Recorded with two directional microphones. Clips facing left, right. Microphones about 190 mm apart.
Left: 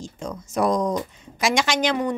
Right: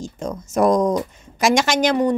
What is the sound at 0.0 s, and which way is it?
A woman's voice, 45° right (ahead or behind).